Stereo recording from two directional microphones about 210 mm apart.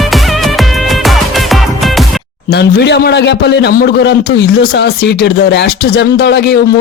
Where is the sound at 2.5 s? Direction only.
50° left (ahead or behind).